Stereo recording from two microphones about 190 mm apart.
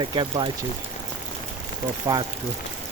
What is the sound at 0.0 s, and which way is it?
Speech, 25° right (ahead or behind).